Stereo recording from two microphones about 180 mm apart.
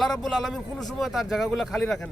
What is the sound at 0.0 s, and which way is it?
Speech, centre (ahead or behind).